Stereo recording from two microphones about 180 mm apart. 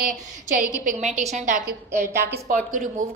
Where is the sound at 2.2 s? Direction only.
65° right (ahead or behind).